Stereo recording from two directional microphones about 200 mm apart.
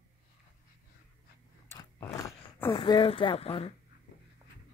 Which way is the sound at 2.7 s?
25° left (ahead or behind).